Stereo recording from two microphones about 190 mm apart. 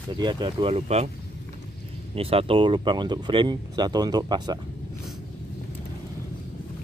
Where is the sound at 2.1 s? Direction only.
30° right (ahead or behind).